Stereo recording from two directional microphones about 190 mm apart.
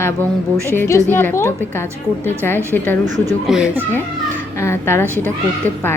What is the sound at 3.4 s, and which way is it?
Speech, 5° right (ahead or behind).